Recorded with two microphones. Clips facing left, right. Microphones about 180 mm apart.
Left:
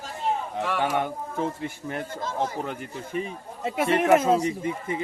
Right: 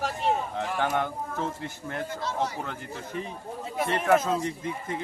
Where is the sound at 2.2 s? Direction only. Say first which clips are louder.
Left 2 dB; 50° left (ahead or behind).